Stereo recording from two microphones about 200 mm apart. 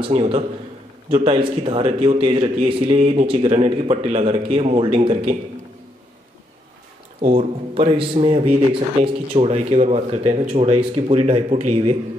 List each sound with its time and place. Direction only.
0.0 s a man's voice: 30° right (ahead or behind)
7.3 s a man's voice: 30° right (ahead or behind)